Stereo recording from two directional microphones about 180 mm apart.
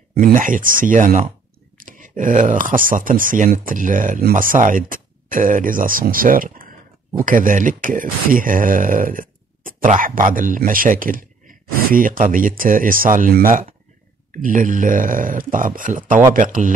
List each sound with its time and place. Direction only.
0.1 s speech: 50° right (ahead or behind)